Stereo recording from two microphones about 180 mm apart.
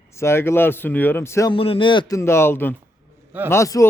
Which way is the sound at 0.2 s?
15° left (ahead or behind).